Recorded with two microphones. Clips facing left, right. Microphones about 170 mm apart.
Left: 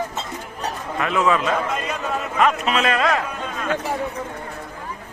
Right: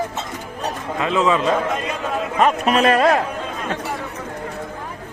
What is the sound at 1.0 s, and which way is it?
Speech, 20° right (ahead or behind).